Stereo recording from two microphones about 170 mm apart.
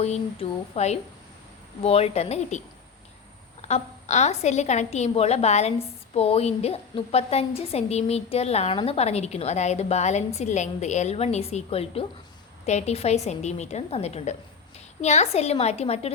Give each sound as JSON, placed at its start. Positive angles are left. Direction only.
{"t": 0.0, "sound": "a woman's voice", "side_deg": 40}
{"t": 3.7, "sound": "a woman's voice", "side_deg": 40}